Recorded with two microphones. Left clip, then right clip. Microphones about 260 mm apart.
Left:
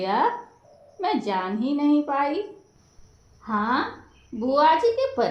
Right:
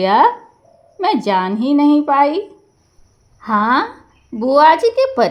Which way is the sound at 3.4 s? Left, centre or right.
Right.